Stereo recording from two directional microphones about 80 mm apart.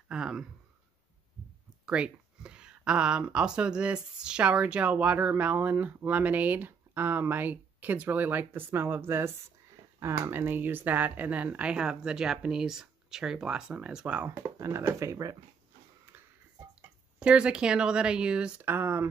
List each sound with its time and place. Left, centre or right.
0.1 s speech: centre
1.9 s speech: centre
14.6 s speech: right
17.2 s speech: centre
18.6 s speech: right